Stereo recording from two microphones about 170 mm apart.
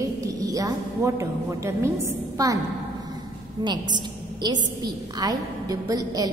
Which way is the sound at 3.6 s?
25° right (ahead or behind).